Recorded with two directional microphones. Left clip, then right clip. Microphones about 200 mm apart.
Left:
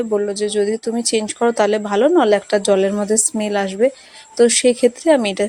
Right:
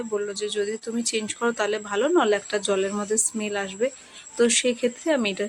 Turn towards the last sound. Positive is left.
turn(degrees=25)  # may be behind; listen again after turning